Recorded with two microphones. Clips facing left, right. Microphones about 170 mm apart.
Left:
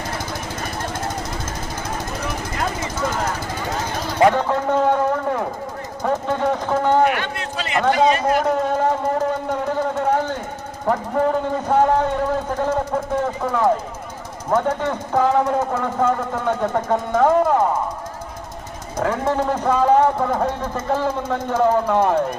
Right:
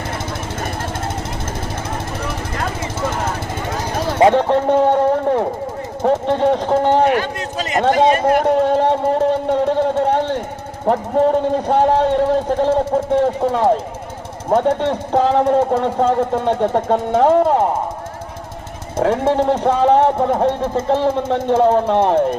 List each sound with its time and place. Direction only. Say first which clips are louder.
3.0 s vehicle: right 1 dB; 25° right (ahead or behind)
4.1 s a sound: right 4 dB; 25° right (ahead or behind)
6.0 s speech: right 5 dB; 25° right (ahead or behind); by 8.4 s 50° right (ahead or behind)
8.4 s speech: right 5 dB; 30° right (ahead or behind)
18.9 s speech: right 5 dB; 25° right (ahead or behind)